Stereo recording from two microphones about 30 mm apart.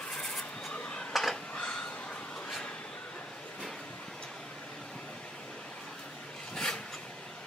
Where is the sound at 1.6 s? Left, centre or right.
Left.